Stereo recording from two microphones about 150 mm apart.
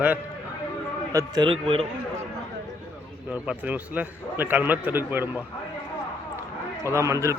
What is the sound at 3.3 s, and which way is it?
A man's voice, 10° right (ahead or behind).